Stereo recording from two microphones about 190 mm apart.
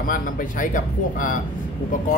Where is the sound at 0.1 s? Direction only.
45° left (ahead or behind).